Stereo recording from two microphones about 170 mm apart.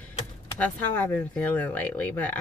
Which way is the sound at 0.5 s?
10° left (ahead or behind).